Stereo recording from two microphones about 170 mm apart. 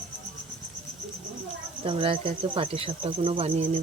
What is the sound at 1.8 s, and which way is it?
Speech, 30° right (ahead or behind).